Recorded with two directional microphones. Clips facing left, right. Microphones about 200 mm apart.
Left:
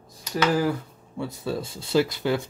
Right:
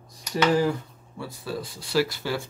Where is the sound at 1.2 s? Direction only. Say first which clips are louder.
Left 4 dB; 20° left (ahead or behind).